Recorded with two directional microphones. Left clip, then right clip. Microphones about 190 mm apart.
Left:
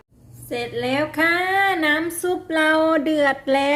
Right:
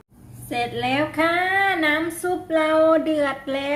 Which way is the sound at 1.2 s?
35° left (ahead or behind).